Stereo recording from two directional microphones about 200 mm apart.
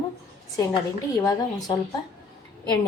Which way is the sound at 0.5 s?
20° left (ahead or behind).